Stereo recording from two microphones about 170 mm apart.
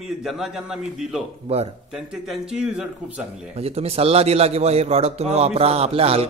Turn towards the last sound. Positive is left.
turn(degrees=-35)  # may be behind; listen again after turning